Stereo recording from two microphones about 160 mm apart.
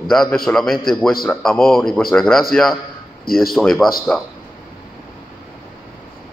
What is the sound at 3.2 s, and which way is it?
Speech, 70° left (ahead or behind).